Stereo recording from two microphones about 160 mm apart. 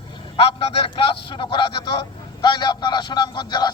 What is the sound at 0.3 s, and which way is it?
A man's voice, 35° left (ahead or behind).